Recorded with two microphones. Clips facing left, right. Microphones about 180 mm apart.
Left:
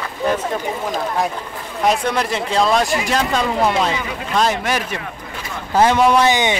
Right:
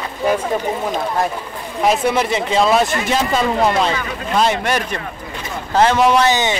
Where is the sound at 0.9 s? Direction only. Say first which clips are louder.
Right 1 dB; centre (ahead or behind).